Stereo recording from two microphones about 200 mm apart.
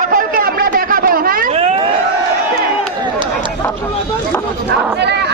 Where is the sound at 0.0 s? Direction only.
45° right (ahead or behind).